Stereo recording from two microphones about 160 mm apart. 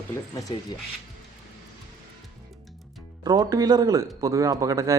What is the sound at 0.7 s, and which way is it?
Speech, 25° left (ahead or behind).